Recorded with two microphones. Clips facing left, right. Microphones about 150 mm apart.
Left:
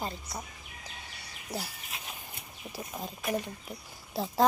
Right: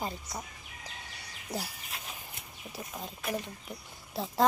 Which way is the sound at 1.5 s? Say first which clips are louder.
Right 1 dB; 15° right (ahead or behind).